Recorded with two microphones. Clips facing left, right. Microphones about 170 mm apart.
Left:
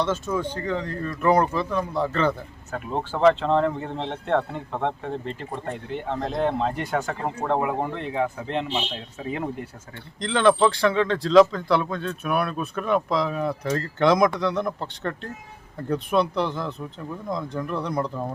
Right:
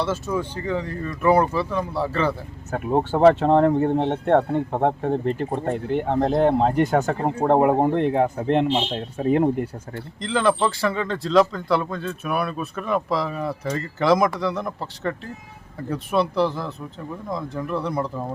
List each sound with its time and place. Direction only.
0.0 s speech: 10° right (ahead or behind)
2.7 s speech: 55° right (ahead or behind)
10.2 s speech: 5° right (ahead or behind)